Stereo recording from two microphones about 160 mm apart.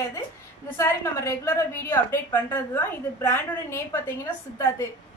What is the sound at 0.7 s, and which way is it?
A woman's voice, 20° left (ahead or behind).